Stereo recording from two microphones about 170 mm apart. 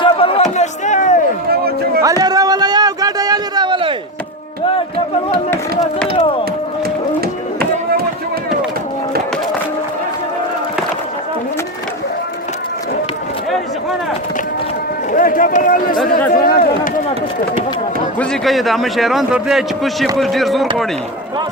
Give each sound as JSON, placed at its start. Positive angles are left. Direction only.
{"t": 0.0, "sound": "chop", "side_deg": 30}
{"t": 2.0, "sound": "a sound", "side_deg": -20}
{"t": 15.1, "sound": "run", "side_deg": 55}
{"t": 16.3, "sound": "speech", "side_deg": 60}
{"t": 18.2, "sound": "a man's voice", "side_deg": 0}